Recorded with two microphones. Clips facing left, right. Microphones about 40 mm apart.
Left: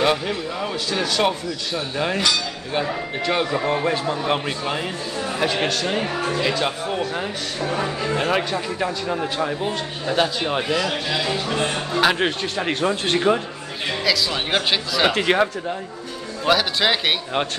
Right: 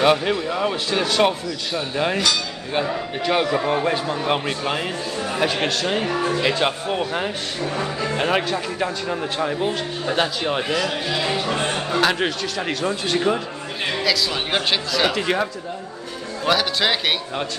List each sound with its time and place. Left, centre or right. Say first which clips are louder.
0.0 s speech: right 3 dB; centre
2.7 s a man's voice: right 1 dB; centre
6.4 s speech: right 1 dB; centre
7.6 s speech: left 2 dB; centre
8.2 s a man's voice: right 2 dB; centre
11.4 s speech: even; centre
12.0 s speech: left 2 dB; centre
14.0 s a man's voice: left 2 dB; centre
15.1 s speech: left 3 dB; left
16.4 s a man's voice: left 1 dB; centre